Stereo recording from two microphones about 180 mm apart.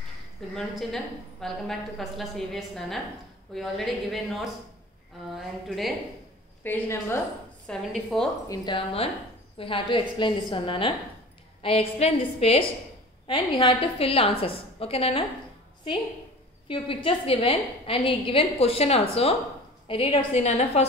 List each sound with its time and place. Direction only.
0.6 s a woman's voice: centre (ahead or behind)
5.3 s a woman's voice: centre (ahead or behind)
6.6 s a woman's voice: 10° left (ahead or behind)
8.5 s a woman's voice: 25° left (ahead or behind)
16.6 s a woman's voice: 30° left (ahead or behind)